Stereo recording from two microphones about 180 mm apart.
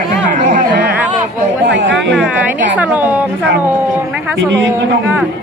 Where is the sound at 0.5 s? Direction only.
50° right (ahead or behind).